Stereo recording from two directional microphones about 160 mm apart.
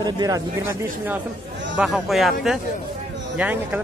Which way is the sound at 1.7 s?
5° right (ahead or behind).